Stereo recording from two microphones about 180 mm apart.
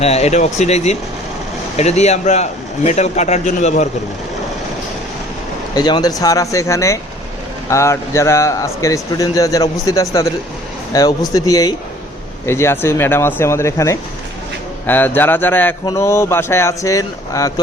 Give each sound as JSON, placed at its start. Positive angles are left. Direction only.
{"t": 0.0, "sound": "speech", "side_deg": 35}
{"t": 5.7, "sound": "a man's voice", "side_deg": 20}